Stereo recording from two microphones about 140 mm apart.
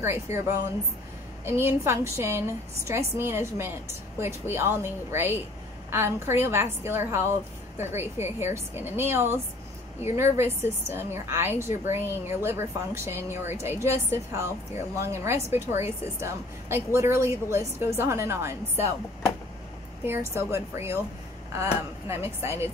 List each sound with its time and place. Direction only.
0.0 s a woman's voice: 20° right (ahead or behind)
20.1 s a woman's voice: 20° right (ahead or behind)